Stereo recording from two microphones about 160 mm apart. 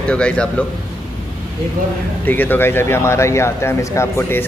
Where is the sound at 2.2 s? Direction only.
10° left (ahead or behind).